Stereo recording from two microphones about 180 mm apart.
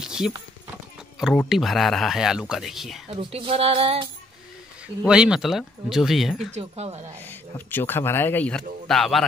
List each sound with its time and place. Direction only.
0.0 s clip-clop: 5° right (ahead or behind)
1.2 s speech: centre (ahead or behind)
3.1 s speech: 35° right (ahead or behind)
5.0 s speech: 5° right (ahead or behind)
6.5 s speech: 35° right (ahead or behind)
7.2 s speech: 10° left (ahead or behind)